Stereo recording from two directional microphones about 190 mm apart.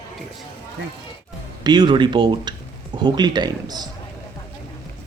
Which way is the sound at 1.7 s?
25° right (ahead or behind).